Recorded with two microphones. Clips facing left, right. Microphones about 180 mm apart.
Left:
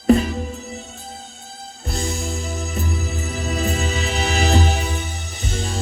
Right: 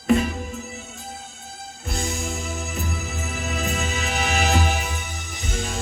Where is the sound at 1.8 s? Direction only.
35° left (ahead or behind).